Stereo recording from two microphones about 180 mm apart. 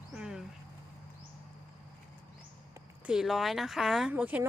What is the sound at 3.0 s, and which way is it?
Speech, centre (ahead or behind).